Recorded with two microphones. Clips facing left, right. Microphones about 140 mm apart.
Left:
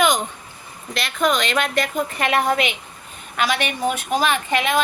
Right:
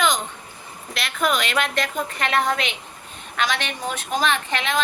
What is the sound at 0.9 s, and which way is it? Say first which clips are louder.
A woman's voice: left 3 dB; centre (ahead or behind).